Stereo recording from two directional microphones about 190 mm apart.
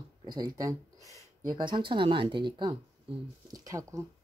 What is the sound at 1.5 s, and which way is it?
Speech, 25° right (ahead or behind).